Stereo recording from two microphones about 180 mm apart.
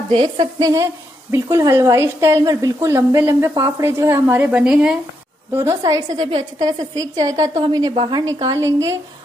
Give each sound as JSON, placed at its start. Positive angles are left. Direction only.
{"t": 0.1, "sound": "a woman's voice", "side_deg": -25}
{"t": 5.5, "sound": "a woman's voice", "side_deg": -15}